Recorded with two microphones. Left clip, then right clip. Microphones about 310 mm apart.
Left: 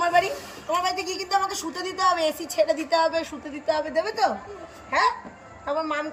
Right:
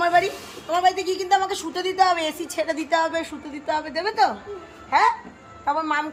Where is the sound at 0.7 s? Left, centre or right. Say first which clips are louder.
Right 5 dB; centre.